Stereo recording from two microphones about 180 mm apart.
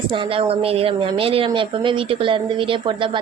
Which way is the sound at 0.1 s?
30° right (ahead or behind).